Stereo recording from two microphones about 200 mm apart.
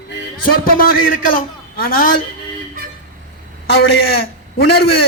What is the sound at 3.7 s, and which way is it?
A man's voice, 55° left (ahead or behind).